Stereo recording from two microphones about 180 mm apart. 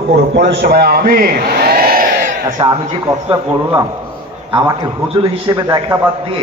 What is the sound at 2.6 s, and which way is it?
A man's voice, 30° right (ahead or behind).